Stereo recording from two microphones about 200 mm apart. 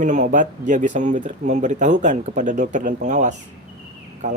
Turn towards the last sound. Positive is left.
turn(degrees=-35)  # may be behind; listen again after turning